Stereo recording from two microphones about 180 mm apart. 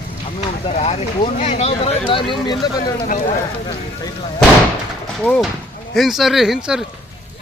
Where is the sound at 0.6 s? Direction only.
35° left (ahead or behind).